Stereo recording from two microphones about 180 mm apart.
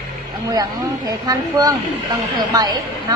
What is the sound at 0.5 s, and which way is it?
A woman's voice, 20° right (ahead or behind).